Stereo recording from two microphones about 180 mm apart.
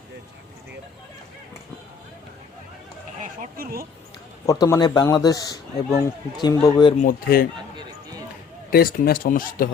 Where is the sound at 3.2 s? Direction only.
50° right (ahead or behind).